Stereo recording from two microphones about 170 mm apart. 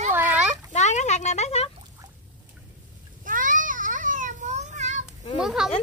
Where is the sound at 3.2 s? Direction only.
50° right (ahead or behind).